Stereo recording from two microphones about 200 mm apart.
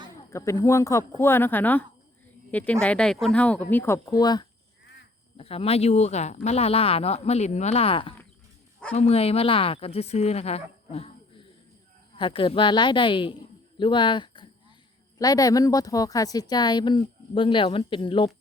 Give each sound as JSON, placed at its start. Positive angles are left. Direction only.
{"t": 0.3, "sound": "speech", "side_deg": 15}